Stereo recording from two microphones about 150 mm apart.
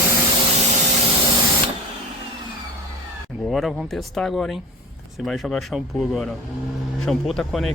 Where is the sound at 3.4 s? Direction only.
Centre (ahead or behind).